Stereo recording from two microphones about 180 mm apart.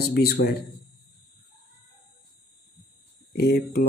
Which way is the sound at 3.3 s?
60° left (ahead or behind).